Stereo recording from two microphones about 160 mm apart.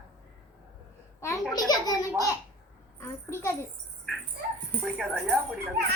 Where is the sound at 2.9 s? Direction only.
15° left (ahead or behind).